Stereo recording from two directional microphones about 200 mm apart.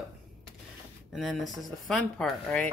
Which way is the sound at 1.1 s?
Centre (ahead or behind).